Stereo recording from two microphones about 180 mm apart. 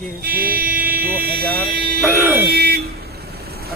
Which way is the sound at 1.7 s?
60° right (ahead or behind).